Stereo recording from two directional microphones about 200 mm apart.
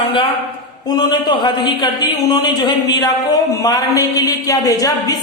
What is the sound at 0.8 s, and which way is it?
A man's voice, 20° left (ahead or behind).